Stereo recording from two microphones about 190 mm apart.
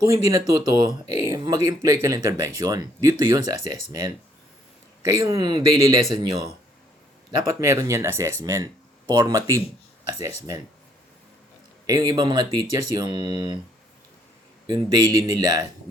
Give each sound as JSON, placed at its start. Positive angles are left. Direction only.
{"t": 0.0, "sound": "speech", "side_deg": -15}
{"t": 5.2, "sound": "speech", "side_deg": -20}
{"t": 7.3, "sound": "speech", "side_deg": -20}
{"t": 11.9, "sound": "speech", "side_deg": -20}
{"t": 14.7, "sound": "speech", "side_deg": -20}